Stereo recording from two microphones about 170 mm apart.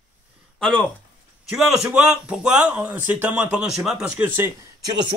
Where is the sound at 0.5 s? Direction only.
5° left (ahead or behind); by 4.9 s 15° right (ahead or behind).